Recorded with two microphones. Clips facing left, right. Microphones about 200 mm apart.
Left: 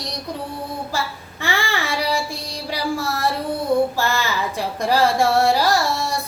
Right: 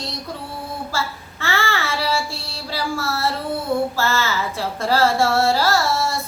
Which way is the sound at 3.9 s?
15° left (ahead or behind).